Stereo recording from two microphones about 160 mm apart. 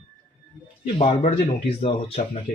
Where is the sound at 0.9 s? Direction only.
35° left (ahead or behind).